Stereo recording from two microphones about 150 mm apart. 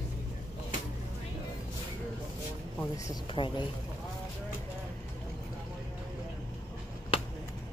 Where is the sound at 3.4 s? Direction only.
35° left (ahead or behind).